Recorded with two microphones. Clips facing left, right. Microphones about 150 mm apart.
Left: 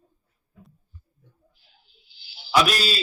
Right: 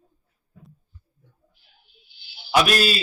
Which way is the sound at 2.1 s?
60° right (ahead or behind).